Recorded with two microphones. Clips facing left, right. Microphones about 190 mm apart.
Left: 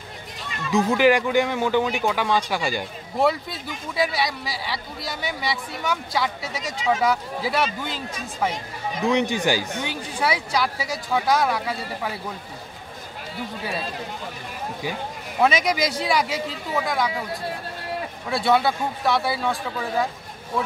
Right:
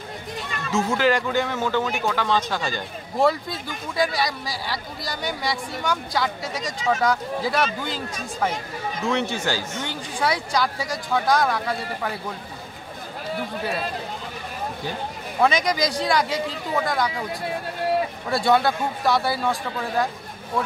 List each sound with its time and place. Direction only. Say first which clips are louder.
0.7 s speech: left 3 dB; 15° left (ahead or behind)
9.0 s speech: left 4 dB; 15° left (ahead or behind)
15.4 s speech: even; 5° left (ahead or behind)
18.3 s speech: even; centre (ahead or behind)